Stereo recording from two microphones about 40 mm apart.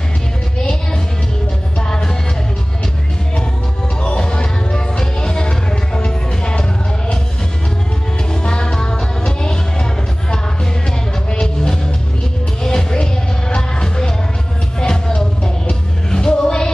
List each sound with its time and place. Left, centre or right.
1.8 s music: centre
4.2 s music: left
8.3 s music: centre
11.2 s music: centre